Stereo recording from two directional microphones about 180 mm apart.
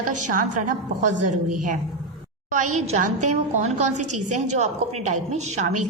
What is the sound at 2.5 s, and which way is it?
A woman's voice, 45° right (ahead or behind).